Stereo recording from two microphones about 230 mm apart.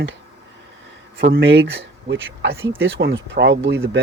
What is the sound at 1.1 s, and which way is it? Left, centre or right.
Speech, right.